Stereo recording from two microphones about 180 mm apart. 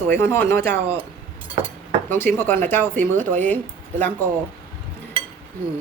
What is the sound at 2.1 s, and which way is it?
Speech, 10° left (ahead or behind).